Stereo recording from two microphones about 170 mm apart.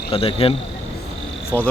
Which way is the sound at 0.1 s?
35° left (ahead or behind).